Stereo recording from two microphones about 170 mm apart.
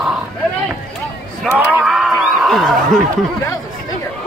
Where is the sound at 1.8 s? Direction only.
Centre (ahead or behind).